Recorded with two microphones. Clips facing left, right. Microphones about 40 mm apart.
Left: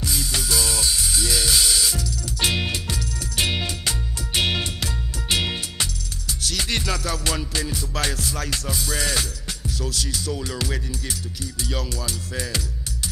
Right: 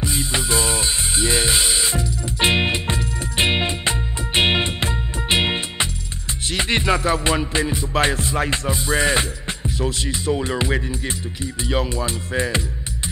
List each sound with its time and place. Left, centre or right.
0.0 s music: right
11.6 s speech: right